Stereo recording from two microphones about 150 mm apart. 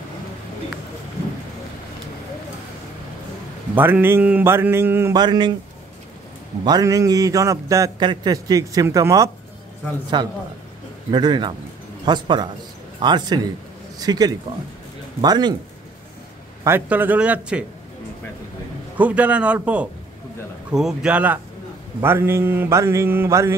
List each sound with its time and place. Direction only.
3.7 s speech: 15° right (ahead or behind)
5.1 s a man's voice: 30° right (ahead or behind)
6.6 s a man's voice: 25° right (ahead or behind)
16.6 s speech: 15° right (ahead or behind)
18.9 s speech: 10° right (ahead or behind)